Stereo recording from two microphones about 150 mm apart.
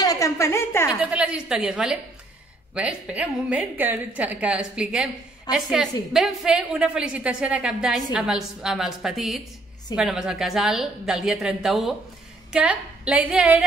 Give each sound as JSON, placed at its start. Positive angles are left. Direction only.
{"t": 0.0, "sound": "a woman's voice", "side_deg": 20}
{"t": 0.9, "sound": "a woman's voice", "side_deg": -5}